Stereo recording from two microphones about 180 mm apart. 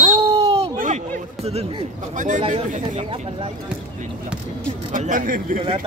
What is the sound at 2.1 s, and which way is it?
Speech, 45° right (ahead or behind).